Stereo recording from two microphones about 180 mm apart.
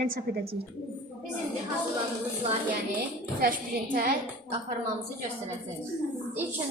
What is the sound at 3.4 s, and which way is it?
A woman's voice, 50° right (ahead or behind).